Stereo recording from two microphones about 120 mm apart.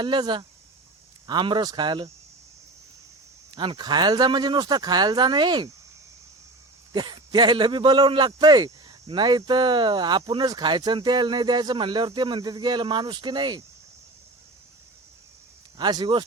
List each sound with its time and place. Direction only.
0.0 s speech: 40° right (ahead or behind)
3.5 s speech: 40° right (ahead or behind)
6.9 s speech: 40° right (ahead or behind)
15.8 s speech: 35° right (ahead or behind)